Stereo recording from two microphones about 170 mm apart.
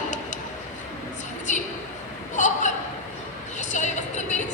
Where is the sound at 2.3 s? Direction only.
45° left (ahead or behind).